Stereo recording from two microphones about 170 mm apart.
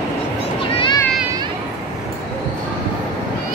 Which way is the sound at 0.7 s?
30° left (ahead or behind).